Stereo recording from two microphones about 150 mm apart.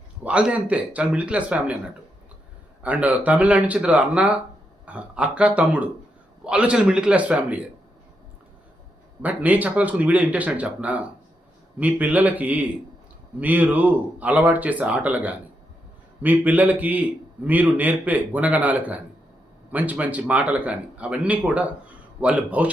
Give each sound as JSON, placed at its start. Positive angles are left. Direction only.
{"t": 0.3, "sound": "a man's voice", "side_deg": -10}
{"t": 2.8, "sound": "a man's voice", "side_deg": -10}
{"t": 9.2, "sound": "a man's voice", "side_deg": -10}